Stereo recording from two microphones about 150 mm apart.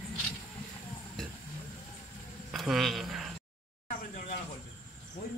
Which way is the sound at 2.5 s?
Centre (ahead or behind).